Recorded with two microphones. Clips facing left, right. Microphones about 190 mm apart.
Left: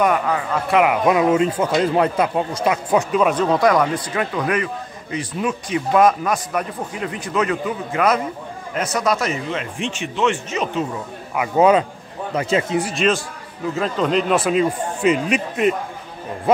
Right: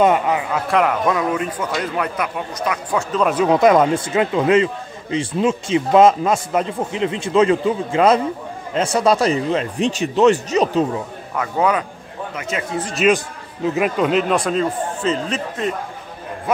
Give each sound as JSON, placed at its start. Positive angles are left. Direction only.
{"t": 0.0, "sound": "a man's voice", "side_deg": -20}
{"t": 0.5, "sound": "a man's voice", "side_deg": 0}
{"t": 1.0, "sound": "speech", "side_deg": 20}
{"t": 3.1, "sound": "a man's voice", "side_deg": 5}
{"t": 3.5, "sound": "a man's voice", "side_deg": -25}
{"t": 11.3, "sound": "speech", "side_deg": 15}
{"t": 13.0, "sound": "a man's voice", "side_deg": -5}
{"t": 14.3, "sound": "a man's voice", "side_deg": 5}